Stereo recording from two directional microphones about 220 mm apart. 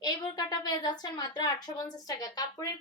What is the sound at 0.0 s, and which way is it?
A woman's voice, 20° left (ahead or behind).